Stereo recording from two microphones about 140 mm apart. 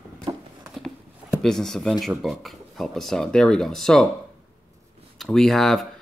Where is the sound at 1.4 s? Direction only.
Centre (ahead or behind).